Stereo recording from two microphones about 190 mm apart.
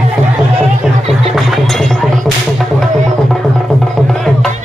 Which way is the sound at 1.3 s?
Centre (ahead or behind).